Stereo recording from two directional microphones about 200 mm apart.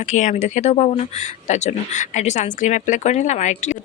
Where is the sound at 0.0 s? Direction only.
35° left (ahead or behind).